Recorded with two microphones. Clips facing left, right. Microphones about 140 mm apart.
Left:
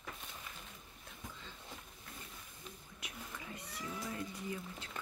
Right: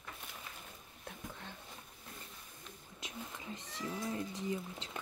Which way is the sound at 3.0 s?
25° right (ahead or behind).